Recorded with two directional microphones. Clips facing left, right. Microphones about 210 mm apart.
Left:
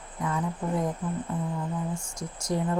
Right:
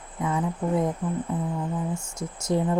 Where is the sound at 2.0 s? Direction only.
25° right (ahead or behind).